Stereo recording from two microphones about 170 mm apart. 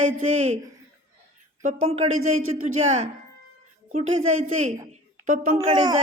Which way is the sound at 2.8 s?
45° right (ahead or behind).